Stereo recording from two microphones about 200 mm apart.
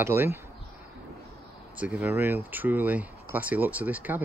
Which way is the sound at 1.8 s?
5° right (ahead or behind).